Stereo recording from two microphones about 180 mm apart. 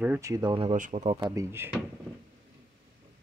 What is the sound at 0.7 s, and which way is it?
Speech, 45° right (ahead or behind).